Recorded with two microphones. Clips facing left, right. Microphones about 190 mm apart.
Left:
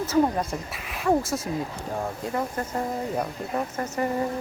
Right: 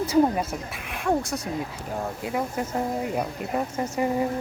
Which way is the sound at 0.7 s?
Centre (ahead or behind).